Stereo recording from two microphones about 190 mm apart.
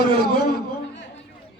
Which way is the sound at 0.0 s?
55° left (ahead or behind).